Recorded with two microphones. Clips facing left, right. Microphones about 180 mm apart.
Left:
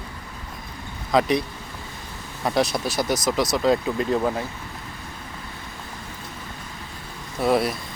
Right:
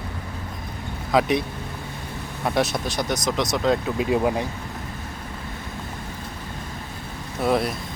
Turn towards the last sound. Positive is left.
turn(degrees=0)  # may be behind; listen again after turning